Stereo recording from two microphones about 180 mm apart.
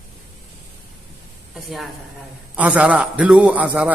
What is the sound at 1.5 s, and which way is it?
A woman's voice, centre (ahead or behind).